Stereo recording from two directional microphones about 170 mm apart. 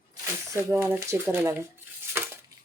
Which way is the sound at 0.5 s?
15° right (ahead or behind).